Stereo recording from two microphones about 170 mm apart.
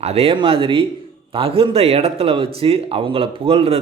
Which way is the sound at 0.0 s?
35° right (ahead or behind).